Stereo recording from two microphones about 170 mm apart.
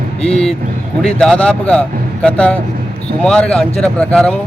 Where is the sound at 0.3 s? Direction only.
35° left (ahead or behind).